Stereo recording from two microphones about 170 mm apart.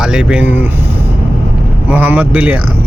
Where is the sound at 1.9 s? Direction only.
10° right (ahead or behind).